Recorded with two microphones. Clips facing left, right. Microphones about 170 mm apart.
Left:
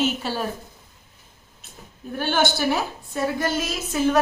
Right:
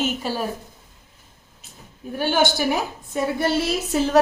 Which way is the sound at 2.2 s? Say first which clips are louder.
Right 2 dB; 15° right (ahead or behind).